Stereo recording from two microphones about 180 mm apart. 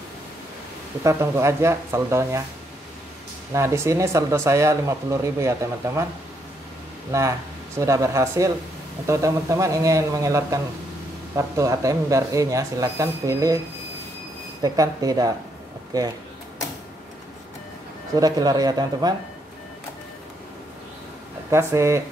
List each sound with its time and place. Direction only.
1.0 s speech: 15° right (ahead or behind)
3.5 s speech: 15° right (ahead or behind)
7.1 s speech: 15° right (ahead or behind)
14.6 s speech: 20° right (ahead or behind)
18.1 s speech: 20° right (ahead or behind)
21.5 s speech: 15° right (ahead or behind)